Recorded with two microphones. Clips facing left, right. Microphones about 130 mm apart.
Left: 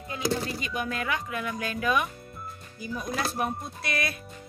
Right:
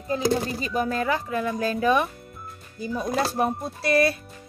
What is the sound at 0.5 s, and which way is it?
Speech, 35° right (ahead or behind).